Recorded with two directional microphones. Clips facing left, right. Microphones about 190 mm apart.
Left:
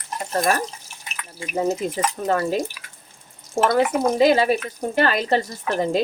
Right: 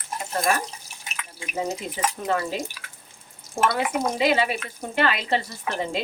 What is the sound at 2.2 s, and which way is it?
Speech, 45° left (ahead or behind).